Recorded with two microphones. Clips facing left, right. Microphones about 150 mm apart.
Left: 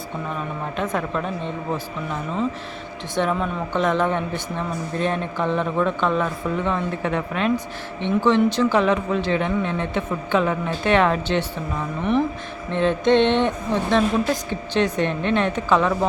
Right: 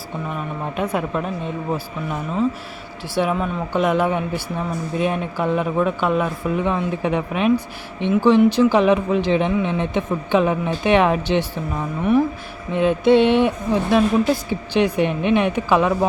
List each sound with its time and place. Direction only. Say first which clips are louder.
0.8 s speech: right 2 dB; 10° right (ahead or behind)
3.2 s speech: right 2 dB; 10° right (ahead or behind)
12.7 s speech: right 3 dB; 10° right (ahead or behind)